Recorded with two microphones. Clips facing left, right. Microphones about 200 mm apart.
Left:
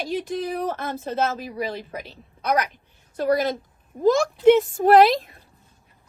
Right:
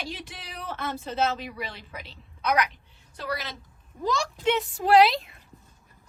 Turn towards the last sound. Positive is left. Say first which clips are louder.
# left 4 dB
turn(degrees=45)  # may be behind; listen again after turning